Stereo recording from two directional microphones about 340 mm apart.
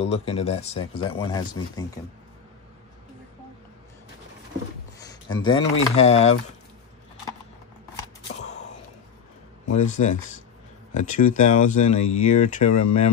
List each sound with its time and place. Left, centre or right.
0.0 s speech: centre
5.0 s speech: centre
8.4 s gasp: centre
9.8 s speech: left